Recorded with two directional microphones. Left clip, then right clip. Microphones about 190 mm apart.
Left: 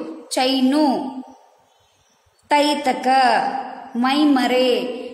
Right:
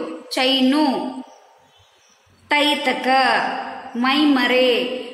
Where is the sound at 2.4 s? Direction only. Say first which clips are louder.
Left 1 dB; 65° left (ahead or behind).